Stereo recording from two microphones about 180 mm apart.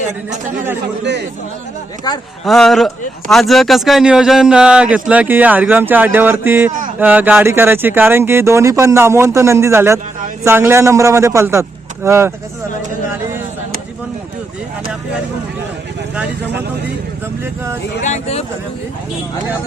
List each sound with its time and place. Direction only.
2.1 s speech: 20° left (ahead or behind)
2.4 s speech: centre (ahead or behind); by 12.3 s 15° right (ahead or behind)
17.4 s speech: 15° right (ahead or behind)
18.0 s speech: 40° left (ahead or behind)